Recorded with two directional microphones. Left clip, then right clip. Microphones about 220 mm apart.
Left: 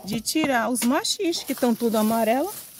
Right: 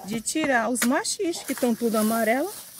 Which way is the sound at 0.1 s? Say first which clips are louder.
Left 1 dB; 20° left (ahead or behind).